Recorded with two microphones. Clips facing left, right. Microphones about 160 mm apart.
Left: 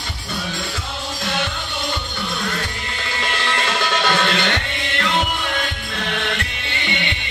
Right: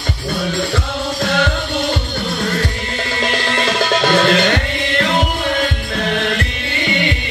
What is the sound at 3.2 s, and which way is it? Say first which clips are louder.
Music: right 4 dB; 40° right (ahead or behind).